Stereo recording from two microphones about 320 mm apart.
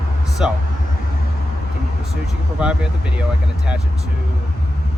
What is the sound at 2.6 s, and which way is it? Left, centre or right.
Speech, centre.